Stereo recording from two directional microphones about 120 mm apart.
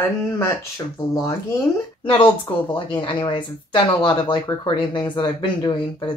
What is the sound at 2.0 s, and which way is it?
A woman's voice, 45° left (ahead or behind).